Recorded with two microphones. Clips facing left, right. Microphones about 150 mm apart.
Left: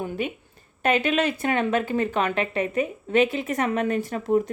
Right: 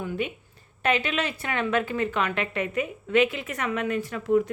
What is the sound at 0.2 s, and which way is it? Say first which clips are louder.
A woman's voice: left 1 dB; 40° left (ahead or behind).